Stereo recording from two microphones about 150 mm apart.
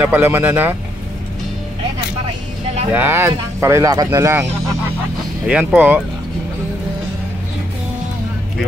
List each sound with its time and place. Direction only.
0.0 s speech: 15° right (ahead or behind)
2.9 s speech: 15° right (ahead or behind)
5.5 s speech: 10° right (ahead or behind)